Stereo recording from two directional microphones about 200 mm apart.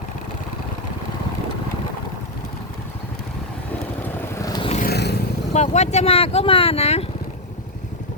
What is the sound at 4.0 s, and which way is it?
Vehicle, 15° left (ahead or behind).